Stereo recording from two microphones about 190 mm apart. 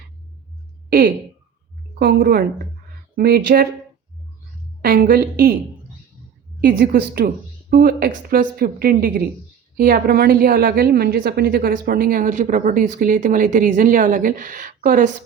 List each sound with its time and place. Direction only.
0.9 s a woman's voice: 50° right (ahead or behind)
4.8 s a woman's voice: 50° right (ahead or behind)
6.6 s a woman's voice: 50° right (ahead or behind)